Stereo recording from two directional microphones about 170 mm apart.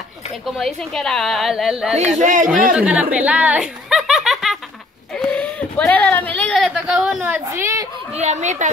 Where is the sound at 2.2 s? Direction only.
50° right (ahead or behind).